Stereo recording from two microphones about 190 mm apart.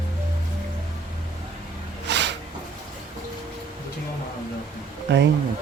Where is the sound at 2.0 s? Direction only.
65° right (ahead or behind).